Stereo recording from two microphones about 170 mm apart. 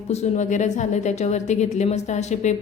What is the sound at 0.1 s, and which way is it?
A woman's voice, 45° left (ahead or behind).